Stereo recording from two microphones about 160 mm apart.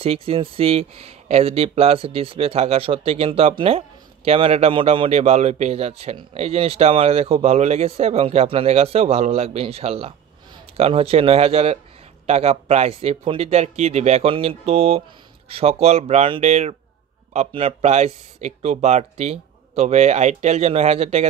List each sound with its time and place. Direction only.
0.0 s a man's voice: 35° right (ahead or behind)